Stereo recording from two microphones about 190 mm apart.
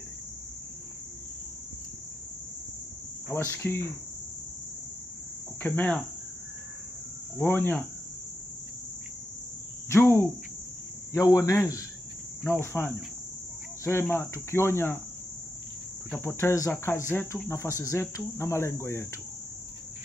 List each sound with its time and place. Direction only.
3.3 s cricket: 10° left (ahead or behind)
5.6 s cricket: 10° left (ahead or behind)
7.3 s cricket: 10° left (ahead or behind)
9.8 s cricket: 15° left (ahead or behind)
16.1 s cricket: 10° left (ahead or behind)